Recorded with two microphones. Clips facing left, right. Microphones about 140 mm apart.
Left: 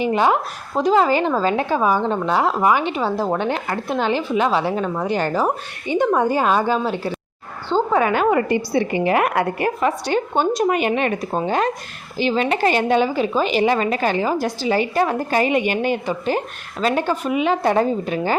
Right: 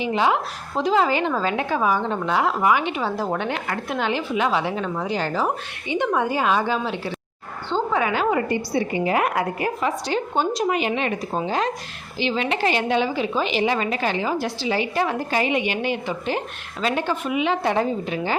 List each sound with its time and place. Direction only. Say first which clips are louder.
0.0 s a woman's voice: left 3 dB; 45° left (ahead or behind)
8.4 s a woman's voice: left 4 dB; 90° left; by 11.7 s 55° left (ahead or behind)
12.1 s a woman's voice: left 4 dB; 45° left (ahead or behind)